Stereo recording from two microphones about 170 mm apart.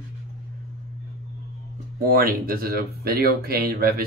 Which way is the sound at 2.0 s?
60° right (ahead or behind).